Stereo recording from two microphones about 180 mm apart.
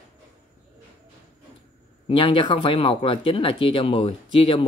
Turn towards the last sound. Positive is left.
turn(degrees=30)  # may be behind; listen again after turning